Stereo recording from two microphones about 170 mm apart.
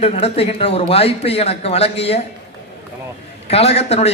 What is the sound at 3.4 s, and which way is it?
Speech, 35° left (ahead or behind).